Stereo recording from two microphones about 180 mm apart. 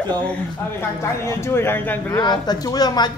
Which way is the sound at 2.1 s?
25° left (ahead or behind).